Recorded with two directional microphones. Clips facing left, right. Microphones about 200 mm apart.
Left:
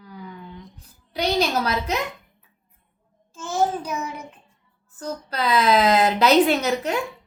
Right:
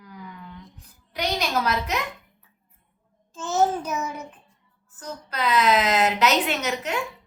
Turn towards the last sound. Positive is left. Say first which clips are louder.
# left 5 dB
turn(degrees=35)  # may be behind; listen again after turning